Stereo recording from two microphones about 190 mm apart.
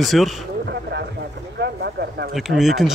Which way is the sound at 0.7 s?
60° right (ahead or behind).